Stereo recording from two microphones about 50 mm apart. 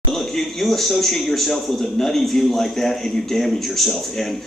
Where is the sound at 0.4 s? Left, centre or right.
Centre.